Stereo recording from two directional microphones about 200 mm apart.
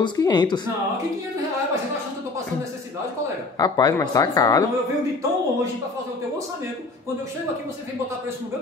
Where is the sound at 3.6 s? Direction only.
20° left (ahead or behind).